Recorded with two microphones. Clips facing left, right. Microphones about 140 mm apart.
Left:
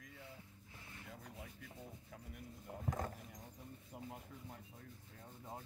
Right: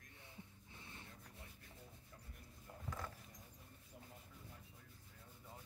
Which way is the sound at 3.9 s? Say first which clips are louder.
Left 9 dB; 80° left.